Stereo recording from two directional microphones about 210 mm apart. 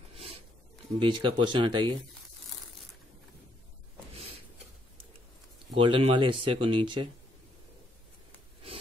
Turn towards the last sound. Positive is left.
turn(degrees=-25)  # may be behind; listen again after turning